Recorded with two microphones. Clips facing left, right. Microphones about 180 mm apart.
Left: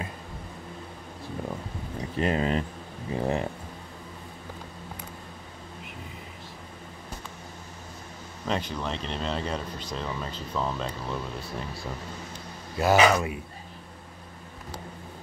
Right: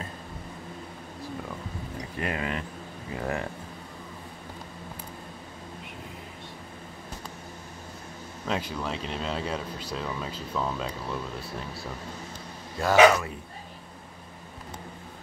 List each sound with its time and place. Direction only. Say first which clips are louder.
2.1 s speech: left 6 dB; 30° left (ahead or behind)
8.5 s speech: left 1 dB; 5° right (ahead or behind)
12.8 s speech: right 2 dB; 10° left (ahead or behind)